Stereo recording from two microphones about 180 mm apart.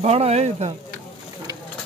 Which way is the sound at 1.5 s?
20° right (ahead or behind).